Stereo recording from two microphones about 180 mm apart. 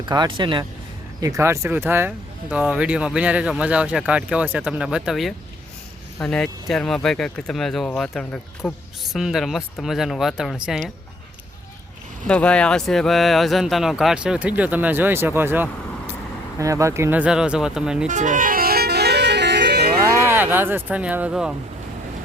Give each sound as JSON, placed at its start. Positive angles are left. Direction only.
{"t": 0.0, "sound": "speech", "side_deg": -25}
{"t": 1.2, "sound": "speech", "side_deg": -15}
{"t": 12.3, "sound": "speech", "side_deg": 5}
{"t": 18.1, "sound": "music", "side_deg": -45}
{"t": 20.2, "sound": "speech", "side_deg": -10}